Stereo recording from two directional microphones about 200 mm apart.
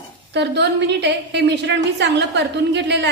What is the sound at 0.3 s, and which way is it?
A woman's voice, 60° right (ahead or behind).